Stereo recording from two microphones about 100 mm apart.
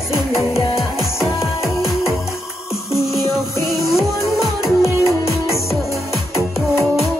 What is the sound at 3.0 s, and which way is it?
Music, centre (ahead or behind).